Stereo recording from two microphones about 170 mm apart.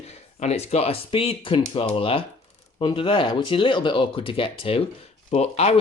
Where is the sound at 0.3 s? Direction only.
40° left (ahead or behind).